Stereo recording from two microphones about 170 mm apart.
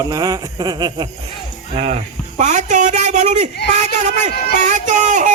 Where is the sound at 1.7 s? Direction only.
35° right (ahead or behind).